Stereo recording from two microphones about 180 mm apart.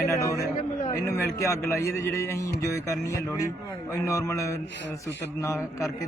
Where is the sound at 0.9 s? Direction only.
15° left (ahead or behind).